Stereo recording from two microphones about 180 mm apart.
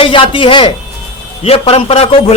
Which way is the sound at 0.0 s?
30° left (ahead or behind).